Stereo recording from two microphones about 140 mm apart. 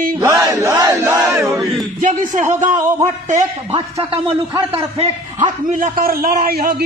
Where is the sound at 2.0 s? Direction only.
60° right (ahead or behind).